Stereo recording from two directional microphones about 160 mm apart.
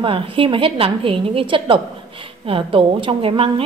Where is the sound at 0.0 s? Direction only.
35° right (ahead or behind).